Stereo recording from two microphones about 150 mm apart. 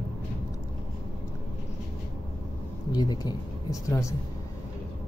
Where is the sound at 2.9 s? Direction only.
25° left (ahead or behind).